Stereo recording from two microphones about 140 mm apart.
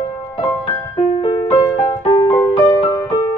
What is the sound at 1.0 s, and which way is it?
Music, 45° left (ahead or behind).